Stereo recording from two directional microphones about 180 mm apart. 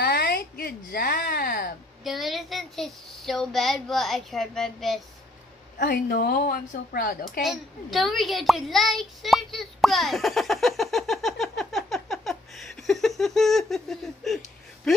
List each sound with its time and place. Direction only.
0.0 s a sound: 60° left (ahead or behind)
2.0 s a child's voice: centre (ahead or behind)
5.8 s speech: 55° left (ahead or behind)
7.4 s a child's voice: centre (ahead or behind)